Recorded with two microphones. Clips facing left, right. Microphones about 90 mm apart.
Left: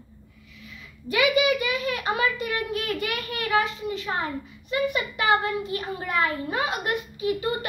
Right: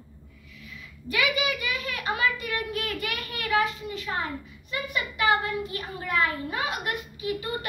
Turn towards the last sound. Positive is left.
turn(degrees=25)  # may be behind; listen again after turning